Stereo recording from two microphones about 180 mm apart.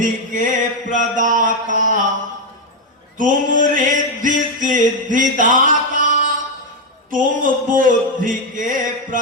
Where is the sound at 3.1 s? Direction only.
45° right (ahead or behind).